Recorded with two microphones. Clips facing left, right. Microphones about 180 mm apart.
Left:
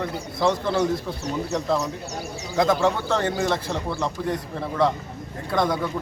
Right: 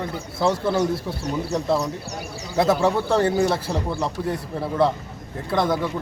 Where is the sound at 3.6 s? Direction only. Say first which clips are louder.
Right 2 dB; 5° right (ahead or behind).